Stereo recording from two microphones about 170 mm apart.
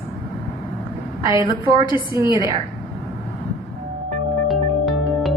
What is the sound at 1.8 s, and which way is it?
Speech, 25° left (ahead or behind).